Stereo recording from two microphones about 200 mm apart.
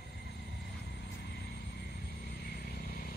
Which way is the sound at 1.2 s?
55° left (ahead or behind).